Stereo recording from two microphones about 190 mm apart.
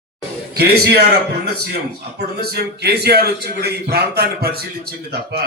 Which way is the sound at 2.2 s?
55° right (ahead or behind).